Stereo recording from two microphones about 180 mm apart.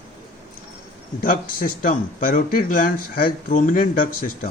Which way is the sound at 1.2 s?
50° left (ahead or behind).